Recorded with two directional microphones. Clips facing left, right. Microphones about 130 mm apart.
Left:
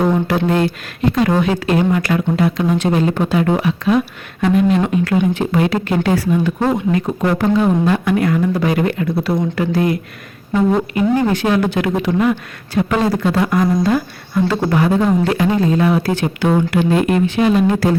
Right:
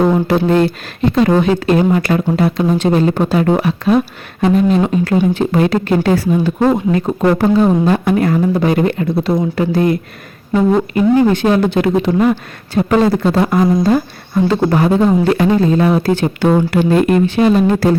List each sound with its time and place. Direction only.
0.3 s speech: 30° right (ahead or behind)